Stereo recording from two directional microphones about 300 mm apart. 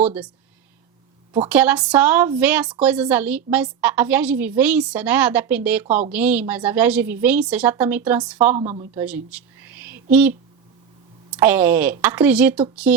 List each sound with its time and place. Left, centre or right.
0.0 s speech: centre
1.5 s a woman's voice: centre
8.5 s a woman's voice: right
9.0 s a sound: centre
11.3 s a woman's voice: centre